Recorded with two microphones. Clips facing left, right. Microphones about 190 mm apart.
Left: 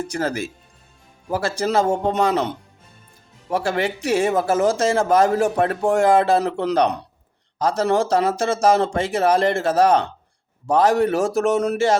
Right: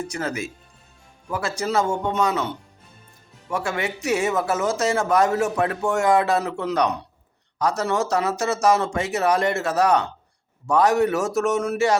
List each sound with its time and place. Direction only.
0.0 s speech: 35° left (ahead or behind)
3.5 s speech: 35° left (ahead or behind)